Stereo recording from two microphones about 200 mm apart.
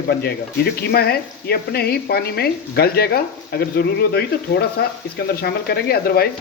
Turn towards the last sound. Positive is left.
turn(degrees=50)  # may be behind; listen again after turning